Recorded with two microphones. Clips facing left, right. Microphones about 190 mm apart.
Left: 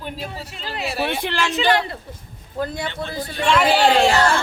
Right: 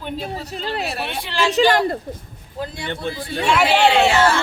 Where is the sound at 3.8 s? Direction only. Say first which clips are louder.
Right 2 dB; 40° left (ahead or behind).